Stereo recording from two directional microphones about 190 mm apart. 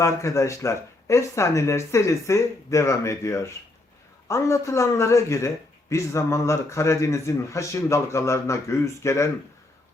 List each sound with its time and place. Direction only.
0.0 s speech: 15° left (ahead or behind)